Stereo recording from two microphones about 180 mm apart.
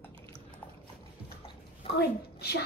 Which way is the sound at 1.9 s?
65° left (ahead or behind).